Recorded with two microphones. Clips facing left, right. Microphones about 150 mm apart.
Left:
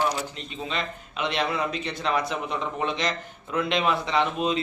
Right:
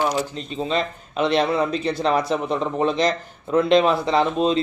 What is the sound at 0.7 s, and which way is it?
Speech, 35° right (ahead or behind).